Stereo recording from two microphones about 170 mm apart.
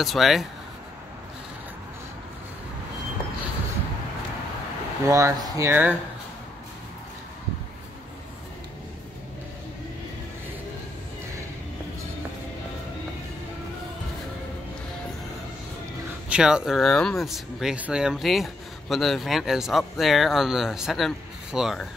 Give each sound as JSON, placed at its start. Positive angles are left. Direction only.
{"t": 0.0, "sound": "speech", "side_deg": 0}
{"t": 5.0, "sound": "speech", "side_deg": -20}
{"t": 16.3, "sound": "speech", "side_deg": -5}